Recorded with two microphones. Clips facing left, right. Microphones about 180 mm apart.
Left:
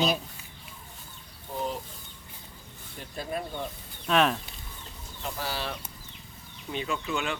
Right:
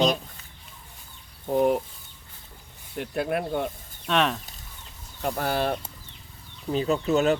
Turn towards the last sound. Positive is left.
turn(degrees=-40)  # may be behind; listen again after turning